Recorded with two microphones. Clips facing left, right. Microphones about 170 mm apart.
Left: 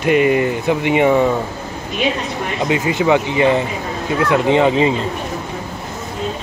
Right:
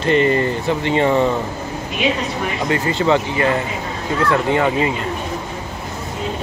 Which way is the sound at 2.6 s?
15° left (ahead or behind).